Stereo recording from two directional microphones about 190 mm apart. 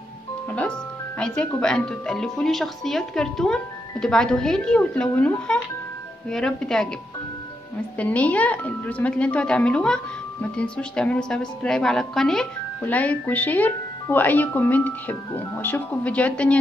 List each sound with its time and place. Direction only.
0.6 s speech: 5° left (ahead or behind)
8.0 s a woman's voice: 5° left (ahead or behind)